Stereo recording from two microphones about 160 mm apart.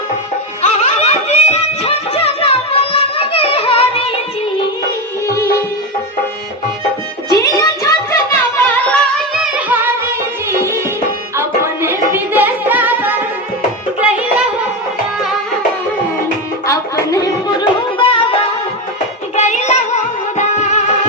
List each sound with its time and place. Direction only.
0.6 s music: 40° left (ahead or behind)
5.3 s music: 20° left (ahead or behind)
7.3 s music: 20° left (ahead or behind)
9.3 s music: 5° right (ahead or behind)
11.3 s music: 15° right (ahead or behind)
16.6 s music: 20° left (ahead or behind)
19.4 s music: 45° left (ahead or behind)